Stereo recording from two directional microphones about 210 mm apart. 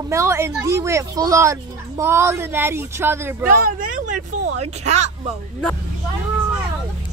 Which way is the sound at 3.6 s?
40° right (ahead or behind).